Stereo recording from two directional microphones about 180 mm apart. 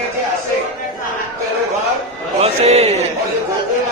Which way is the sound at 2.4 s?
35° right (ahead or behind).